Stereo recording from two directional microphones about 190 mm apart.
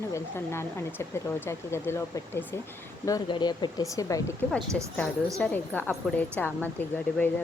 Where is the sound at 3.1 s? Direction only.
25° left (ahead or behind).